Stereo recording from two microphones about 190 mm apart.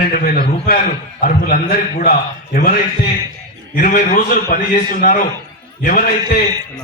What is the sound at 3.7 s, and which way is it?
A man's voice, 45° left (ahead or behind).